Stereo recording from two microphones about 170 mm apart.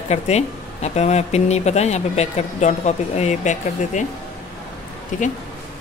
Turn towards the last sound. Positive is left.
turn(degrees=45)  # may be behind; listen again after turning